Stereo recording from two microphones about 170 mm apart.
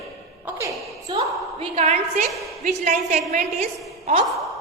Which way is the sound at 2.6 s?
45° right (ahead or behind).